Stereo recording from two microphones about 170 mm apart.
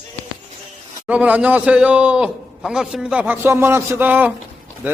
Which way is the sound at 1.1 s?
10° right (ahead or behind).